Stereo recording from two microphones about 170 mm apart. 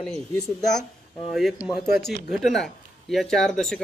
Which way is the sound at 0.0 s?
5° left (ahead or behind).